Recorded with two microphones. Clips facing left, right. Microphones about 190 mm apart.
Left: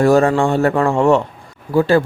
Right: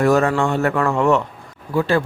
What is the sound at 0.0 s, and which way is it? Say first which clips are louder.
Speech: left 4 dB; 30° left (ahead or behind).